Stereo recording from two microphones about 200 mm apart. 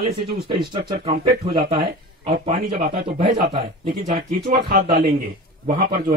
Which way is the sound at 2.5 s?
45° right (ahead or behind).